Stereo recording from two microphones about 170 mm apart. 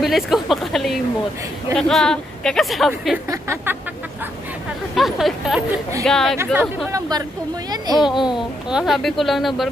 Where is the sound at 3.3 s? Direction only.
15° right (ahead or behind).